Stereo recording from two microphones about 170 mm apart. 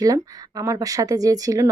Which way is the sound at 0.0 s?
20° right (ahead or behind).